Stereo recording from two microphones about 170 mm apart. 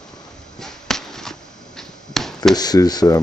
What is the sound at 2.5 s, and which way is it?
Speech, 25° left (ahead or behind).